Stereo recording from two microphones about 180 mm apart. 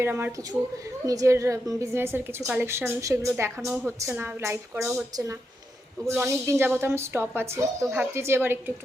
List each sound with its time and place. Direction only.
0.0 s a woman's voice: 10° right (ahead or behind)
6.1 s a woman's voice: 15° right (ahead or behind)